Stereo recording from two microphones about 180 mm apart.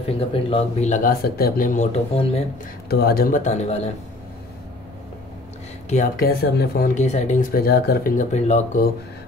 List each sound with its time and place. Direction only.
0.3 s speech: 35° left (ahead or behind)
2.9 s speech: 60° left (ahead or behind); by 3.9 s 35° left (ahead or behind)
5.9 s speech: 45° left (ahead or behind)
6.2 s speech: 60° left (ahead or behind)
7.0 s speech: 40° left (ahead or behind)